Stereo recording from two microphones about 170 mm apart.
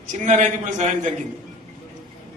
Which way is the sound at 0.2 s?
45° right (ahead or behind).